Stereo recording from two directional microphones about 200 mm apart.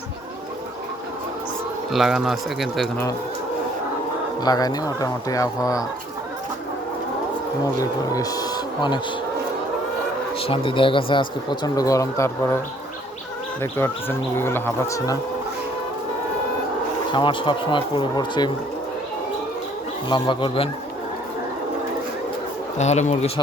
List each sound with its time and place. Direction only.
1.9 s speech: centre (ahead or behind)
4.4 s speech: 20° left (ahead or behind)
7.8 s speech: 20° left (ahead or behind)
10.4 s speech: 25° left (ahead or behind)
13.6 s speech: 10° left (ahead or behind)
17.1 s speech: 25° left (ahead or behind)
20.1 s speech: 25° left (ahead or behind)
22.8 s speech: 35° left (ahead or behind)